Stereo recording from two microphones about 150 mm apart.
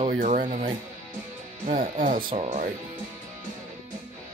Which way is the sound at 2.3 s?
45° right (ahead or behind).